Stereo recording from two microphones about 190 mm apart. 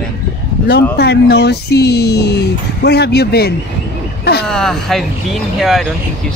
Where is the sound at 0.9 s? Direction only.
60° left (ahead or behind).